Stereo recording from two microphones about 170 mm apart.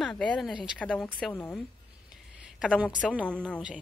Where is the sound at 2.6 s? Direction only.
5° right (ahead or behind).